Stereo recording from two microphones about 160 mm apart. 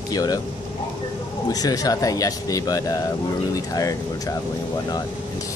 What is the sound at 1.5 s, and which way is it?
A man's voice, 25° left (ahead or behind).